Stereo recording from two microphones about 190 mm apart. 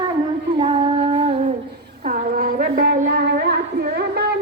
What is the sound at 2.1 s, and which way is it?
Child singing, 50° right (ahead or behind).